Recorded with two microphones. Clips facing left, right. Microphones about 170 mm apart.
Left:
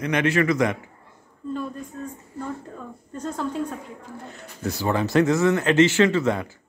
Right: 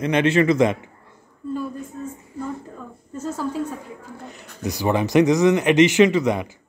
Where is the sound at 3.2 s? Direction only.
5° right (ahead or behind).